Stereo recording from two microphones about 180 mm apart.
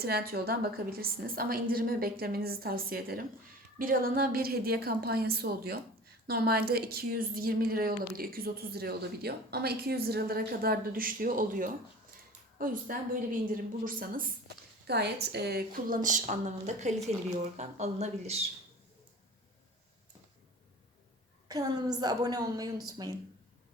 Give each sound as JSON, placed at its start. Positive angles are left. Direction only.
{"t": 0.0, "sound": "a woman's voice", "side_deg": -60}
{"t": 21.4, "sound": "a woman's voice", "side_deg": -20}